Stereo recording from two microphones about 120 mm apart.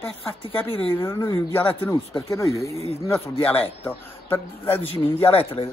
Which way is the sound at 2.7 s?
60° right (ahead or behind).